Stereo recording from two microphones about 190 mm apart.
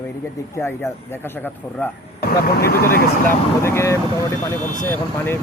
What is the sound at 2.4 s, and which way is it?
Speech, 55° left (ahead or behind).